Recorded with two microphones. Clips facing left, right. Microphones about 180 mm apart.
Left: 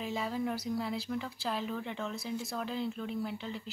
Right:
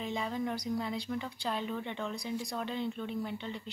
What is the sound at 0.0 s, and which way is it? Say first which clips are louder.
Speech: even; 5° left (ahead or behind).